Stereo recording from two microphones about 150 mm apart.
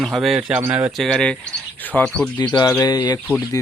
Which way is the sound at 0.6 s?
10° right (ahead or behind).